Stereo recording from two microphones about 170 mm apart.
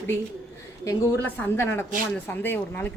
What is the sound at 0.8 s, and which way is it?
Speech, 10° left (ahead or behind).